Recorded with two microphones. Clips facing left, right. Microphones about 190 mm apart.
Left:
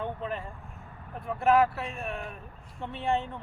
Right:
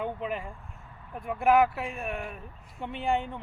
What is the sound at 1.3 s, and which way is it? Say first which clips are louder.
Speech: right 1 dB; 15° right (ahead or behind).